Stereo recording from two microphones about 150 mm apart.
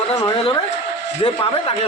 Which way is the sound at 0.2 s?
35° left (ahead or behind).